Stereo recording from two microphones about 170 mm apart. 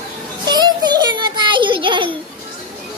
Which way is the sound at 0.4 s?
25° right (ahead or behind).